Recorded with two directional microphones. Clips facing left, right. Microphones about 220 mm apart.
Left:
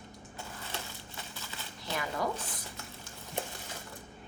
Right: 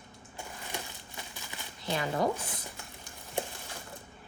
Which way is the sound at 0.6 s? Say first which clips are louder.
Right 1 dB; 15° right (ahead or behind).